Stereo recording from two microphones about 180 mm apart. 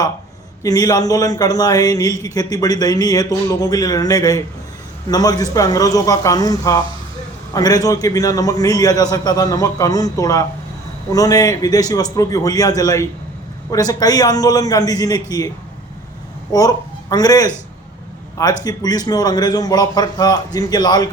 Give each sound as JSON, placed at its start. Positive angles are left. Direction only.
{"t": 0.6, "sound": "a man's voice", "side_deg": 20}
{"t": 16.5, "sound": "a man's voice", "side_deg": 20}